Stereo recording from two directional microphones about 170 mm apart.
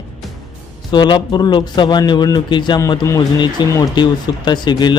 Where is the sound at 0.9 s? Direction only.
25° left (ahead or behind).